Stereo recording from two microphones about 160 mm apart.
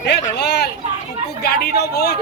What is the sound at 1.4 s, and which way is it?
Speech, 80° left.